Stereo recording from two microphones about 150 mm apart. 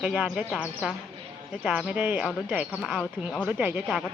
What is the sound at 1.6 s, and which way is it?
Speech, 5° right (ahead or behind).